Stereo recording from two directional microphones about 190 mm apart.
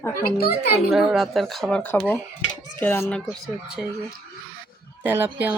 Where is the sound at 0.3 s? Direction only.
50° left (ahead or behind).